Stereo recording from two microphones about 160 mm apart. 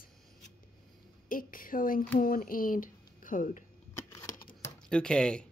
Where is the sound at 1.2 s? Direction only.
60° left (ahead or behind).